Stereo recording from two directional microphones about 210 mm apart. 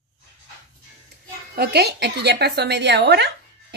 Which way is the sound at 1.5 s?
50° right (ahead or behind).